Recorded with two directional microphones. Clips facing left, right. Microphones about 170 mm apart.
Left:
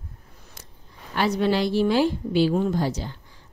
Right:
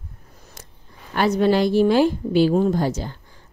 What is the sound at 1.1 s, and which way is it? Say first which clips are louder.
A woman's voice: right 4 dB; 50° right (ahead or behind).